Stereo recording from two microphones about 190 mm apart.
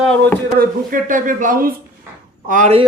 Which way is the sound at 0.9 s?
45° right (ahead or behind).